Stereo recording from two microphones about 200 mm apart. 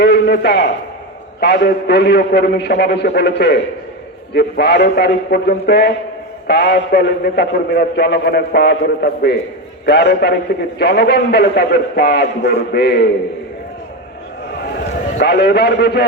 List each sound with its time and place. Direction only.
0.0 s a man's voice: 55° left (ahead or behind)
15.2 s a man's voice: 55° left (ahead or behind)